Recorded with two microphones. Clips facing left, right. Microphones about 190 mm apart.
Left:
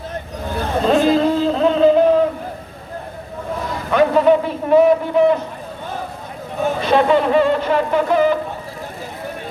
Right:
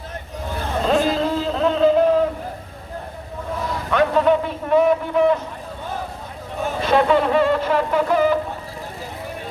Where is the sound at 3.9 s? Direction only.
5° left (ahead or behind).